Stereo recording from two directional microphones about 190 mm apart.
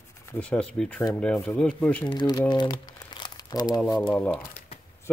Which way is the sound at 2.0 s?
25° left (ahead or behind).